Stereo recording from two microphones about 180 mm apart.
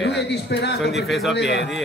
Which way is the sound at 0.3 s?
70° left (ahead or behind).